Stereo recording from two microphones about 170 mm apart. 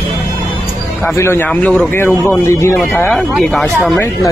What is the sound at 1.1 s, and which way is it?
Speech, 15° left (ahead or behind).